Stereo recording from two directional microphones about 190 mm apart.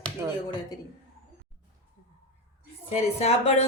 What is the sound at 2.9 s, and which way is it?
Speech, 35° left (ahead or behind).